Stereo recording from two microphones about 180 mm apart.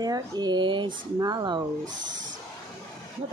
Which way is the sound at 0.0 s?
20° right (ahead or behind).